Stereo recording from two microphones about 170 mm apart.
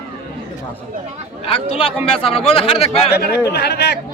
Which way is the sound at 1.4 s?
35° left (ahead or behind).